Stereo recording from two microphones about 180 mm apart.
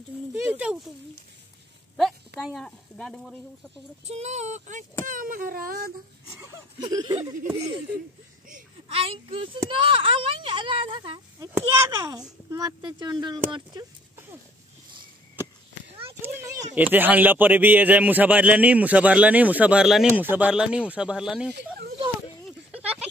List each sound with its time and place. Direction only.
0.4 s speech: 10° right (ahead or behind)
2.0 s a sound: centre (ahead or behind)
2.4 s speech: centre (ahead or behind)
4.0 s speech: 35° right (ahead or behind)
5.0 s a sound: 50° right (ahead or behind)
6.8 s a child's voice: 20° right (ahead or behind)
8.8 s a child's voice: 30° right (ahead or behind)
16.2 s a child's voice: 15° right (ahead or behind)